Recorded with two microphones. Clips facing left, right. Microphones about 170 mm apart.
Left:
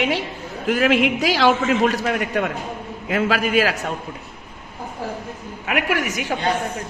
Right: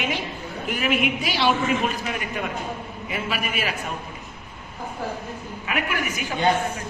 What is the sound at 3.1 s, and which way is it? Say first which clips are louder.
Speech: left 9 dB; 90° left.